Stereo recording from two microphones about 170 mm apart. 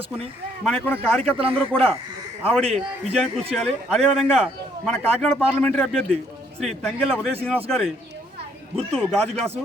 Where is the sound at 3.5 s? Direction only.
Centre (ahead or behind).